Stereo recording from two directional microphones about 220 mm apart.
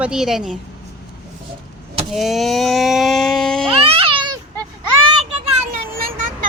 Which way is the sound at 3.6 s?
25° right (ahead or behind).